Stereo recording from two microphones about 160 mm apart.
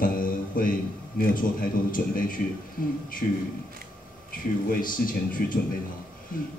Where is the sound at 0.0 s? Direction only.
60° left (ahead or behind).